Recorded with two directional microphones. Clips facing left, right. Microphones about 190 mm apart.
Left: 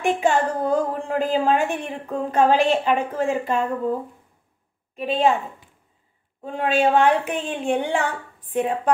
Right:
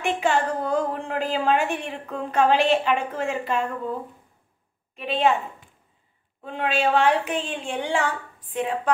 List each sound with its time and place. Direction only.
0.0 s a woman's voice: 45° left (ahead or behind)
4.9 s a woman's voice: 40° left (ahead or behind)
6.4 s a woman's voice: 45° left (ahead or behind)